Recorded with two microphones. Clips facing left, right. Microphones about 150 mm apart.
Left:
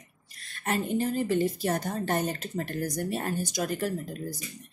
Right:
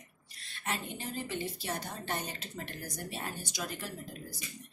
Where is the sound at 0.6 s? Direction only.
45° left (ahead or behind).